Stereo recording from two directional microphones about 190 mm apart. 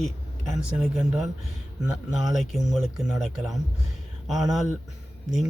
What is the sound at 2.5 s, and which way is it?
Speech, centre (ahead or behind).